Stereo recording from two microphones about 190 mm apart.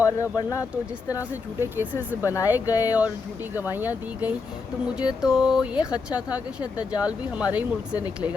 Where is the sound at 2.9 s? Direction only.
10° right (ahead or behind).